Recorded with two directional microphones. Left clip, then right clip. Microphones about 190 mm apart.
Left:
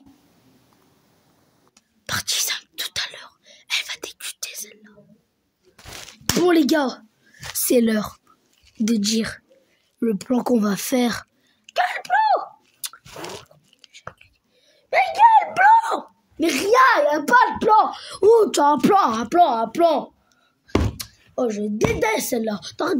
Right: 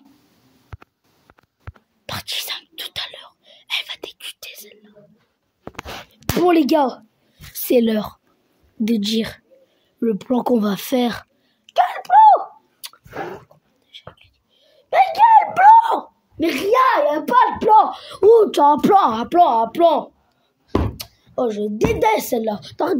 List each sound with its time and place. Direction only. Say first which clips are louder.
2.0 s whispering: left 2 dB; 10° left (ahead or behind)
6.3 s a child's voice: right 2 dB; 15° left (ahead or behind)
9.9 s a sound: right 2 dB; centre (ahead or behind)
14.1 s whispering: right 1 dB; 20° left (ahead or behind)
15.1 s a sound: right 1 dB; 5° left (ahead or behind)
16.4 s hands: even; 5° right (ahead or behind)
18.9 s a child's voice: right 3 dB; 10° left (ahead or behind)
21.0 s a woman's voice: right 2 dB; 10° left (ahead or behind)